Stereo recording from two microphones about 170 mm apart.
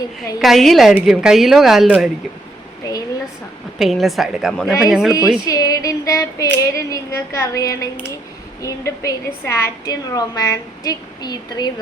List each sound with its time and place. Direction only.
0.4 s speech: centre (ahead or behind)
2.8 s a sound: 20° left (ahead or behind)
3.8 s speech: centre (ahead or behind)
5.5 s female singing: 20° left (ahead or behind)
8.6 s a woman's voice: 15° left (ahead or behind)